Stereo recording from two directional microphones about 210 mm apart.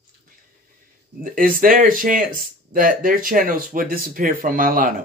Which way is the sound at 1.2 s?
40° right (ahead or behind).